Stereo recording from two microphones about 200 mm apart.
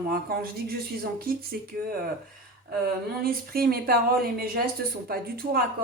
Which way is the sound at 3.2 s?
50° right (ahead or behind).